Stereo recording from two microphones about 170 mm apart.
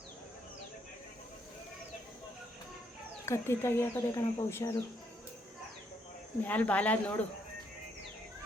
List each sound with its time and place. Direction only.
3.2 s speech: 15° left (ahead or behind)
6.4 s speech: 10° left (ahead or behind)